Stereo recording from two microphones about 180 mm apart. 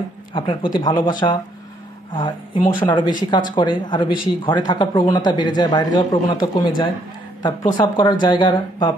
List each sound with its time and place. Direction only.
0.3 s speech: 30° left (ahead or behind)
2.1 s speech: 25° left (ahead or behind)
7.7 s speech: 25° left (ahead or behind)